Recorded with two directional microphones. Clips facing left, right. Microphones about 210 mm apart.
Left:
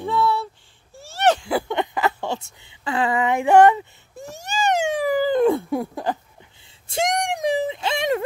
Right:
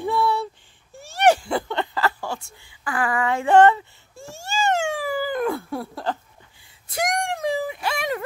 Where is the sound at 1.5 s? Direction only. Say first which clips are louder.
Left 2 dB; 15° left (ahead or behind).